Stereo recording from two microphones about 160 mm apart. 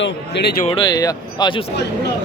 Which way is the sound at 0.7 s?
25° left (ahead or behind).